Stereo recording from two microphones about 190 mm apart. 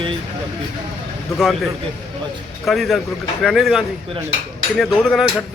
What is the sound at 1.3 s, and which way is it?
Speech, centre (ahead or behind).